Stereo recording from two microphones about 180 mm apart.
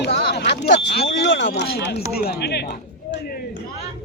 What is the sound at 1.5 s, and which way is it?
Speech, 65° left (ahead or behind).